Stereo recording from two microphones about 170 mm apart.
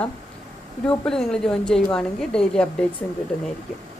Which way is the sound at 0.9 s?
5° left (ahead or behind).